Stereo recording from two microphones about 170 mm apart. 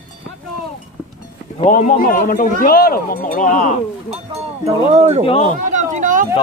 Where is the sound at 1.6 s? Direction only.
45° left (ahead or behind).